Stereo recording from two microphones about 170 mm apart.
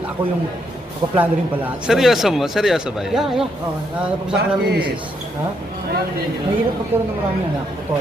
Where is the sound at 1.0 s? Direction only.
25° right (ahead or behind).